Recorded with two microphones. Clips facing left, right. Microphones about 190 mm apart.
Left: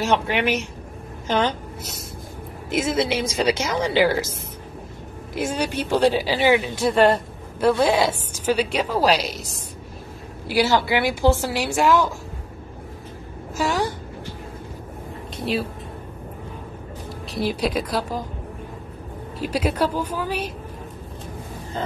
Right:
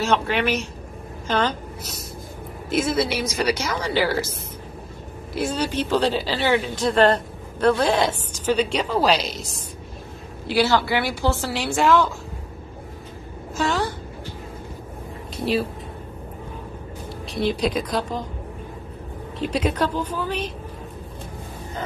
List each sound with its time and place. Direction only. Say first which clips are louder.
0.0 s speech: even; 15° left (ahead or behind)
2.7 s speech: even; 20° left (ahead or behind)
5.3 s speech: even; 10° left (ahead or behind)
10.4 s speech: even; 10° left (ahead or behind)
13.6 s a sound: left 1 dB; 15° left (ahead or behind)
15.3 s a sound: right 2 dB; centre (ahead or behind)
17.3 s speech: right 1 dB; 5° left (ahead or behind)
19.4 s speech: even; 5° left (ahead or behind)